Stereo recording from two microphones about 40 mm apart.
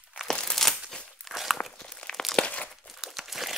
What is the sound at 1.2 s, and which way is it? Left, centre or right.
Walk, centre.